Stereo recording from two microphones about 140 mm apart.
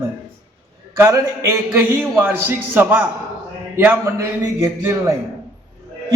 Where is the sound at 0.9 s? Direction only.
20° right (ahead or behind).